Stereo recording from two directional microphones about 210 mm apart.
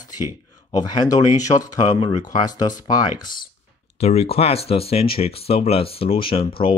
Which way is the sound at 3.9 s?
30° left (ahead or behind).